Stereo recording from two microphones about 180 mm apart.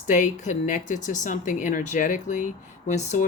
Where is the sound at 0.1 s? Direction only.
45° left (ahead or behind).